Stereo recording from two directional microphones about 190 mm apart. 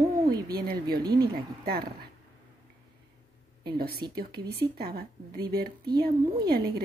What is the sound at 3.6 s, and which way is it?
A woman's voice, 55° right (ahead or behind).